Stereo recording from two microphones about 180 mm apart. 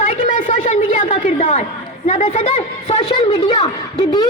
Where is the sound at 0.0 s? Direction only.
40° left (ahead or behind).